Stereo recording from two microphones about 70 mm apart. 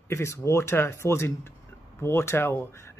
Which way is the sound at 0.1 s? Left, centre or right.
Left.